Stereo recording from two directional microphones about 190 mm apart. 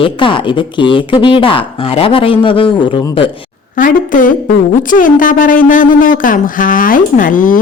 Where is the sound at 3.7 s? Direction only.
45° left (ahead or behind).